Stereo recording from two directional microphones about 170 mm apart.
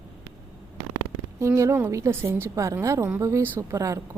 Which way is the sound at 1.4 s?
15° right (ahead or behind).